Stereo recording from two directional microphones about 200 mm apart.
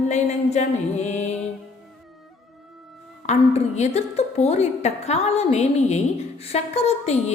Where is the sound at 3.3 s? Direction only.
35° left (ahead or behind).